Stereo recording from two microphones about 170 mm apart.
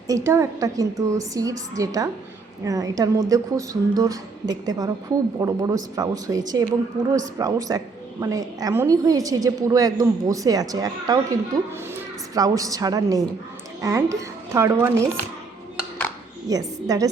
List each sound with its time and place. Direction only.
0.1 s a woman's voice: 15° right (ahead or behind)
16.5 s a woman's voice: 20° right (ahead or behind)